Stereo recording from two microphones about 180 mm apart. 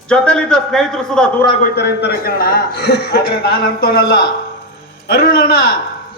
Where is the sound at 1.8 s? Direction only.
65° left (ahead or behind).